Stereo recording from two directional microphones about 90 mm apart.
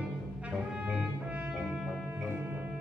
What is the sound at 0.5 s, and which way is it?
Brass instrument, 10° right (ahead or behind).